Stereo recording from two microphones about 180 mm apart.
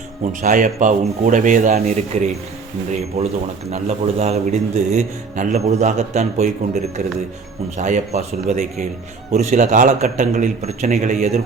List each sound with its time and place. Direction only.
0.4 s a man's voice: 45° right (ahead or behind)
3.7 s a man's voice: 40° right (ahead or behind)